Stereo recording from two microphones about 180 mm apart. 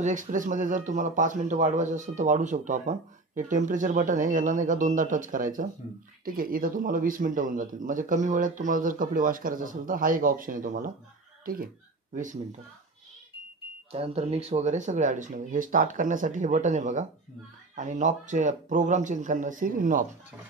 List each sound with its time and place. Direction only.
0.0 s speech: 45° right (ahead or behind)
13.9 s speech: 35° right (ahead or behind)